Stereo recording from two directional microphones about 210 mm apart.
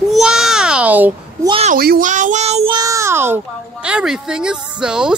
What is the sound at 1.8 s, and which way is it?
A child's voice, 45° right (ahead or behind).